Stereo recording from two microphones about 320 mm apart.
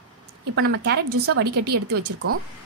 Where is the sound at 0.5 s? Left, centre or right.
Right.